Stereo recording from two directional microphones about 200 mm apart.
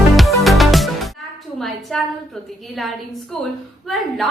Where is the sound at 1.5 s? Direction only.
Centre (ahead or behind).